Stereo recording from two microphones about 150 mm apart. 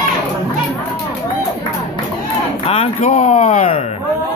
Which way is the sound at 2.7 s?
45° left (ahead or behind).